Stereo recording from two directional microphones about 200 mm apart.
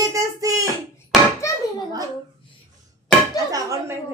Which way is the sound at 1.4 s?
15° left (ahead or behind).